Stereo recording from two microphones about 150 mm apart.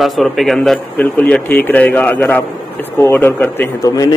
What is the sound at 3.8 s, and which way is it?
Speech, 25° left (ahead or behind).